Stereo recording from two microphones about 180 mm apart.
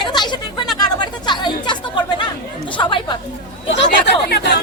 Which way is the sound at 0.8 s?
25° left (ahead or behind).